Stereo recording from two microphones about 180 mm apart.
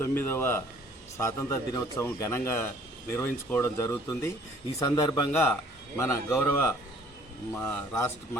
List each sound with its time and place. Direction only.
0.0 s a man's voice: 10° left (ahead or behind)